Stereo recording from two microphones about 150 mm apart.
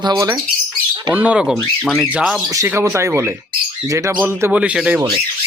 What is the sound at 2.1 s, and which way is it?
Speech, 5° right (ahead or behind).